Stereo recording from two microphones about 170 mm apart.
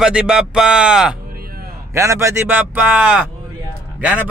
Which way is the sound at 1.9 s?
15° right (ahead or behind).